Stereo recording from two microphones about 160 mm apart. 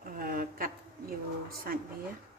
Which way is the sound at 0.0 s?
60° right (ahead or behind).